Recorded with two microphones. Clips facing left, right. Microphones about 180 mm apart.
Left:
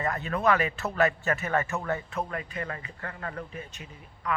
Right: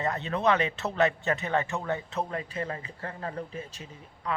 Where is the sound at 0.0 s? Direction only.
20° right (ahead or behind).